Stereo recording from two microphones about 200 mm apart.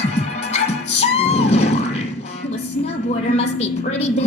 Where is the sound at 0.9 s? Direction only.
30° left (ahead or behind).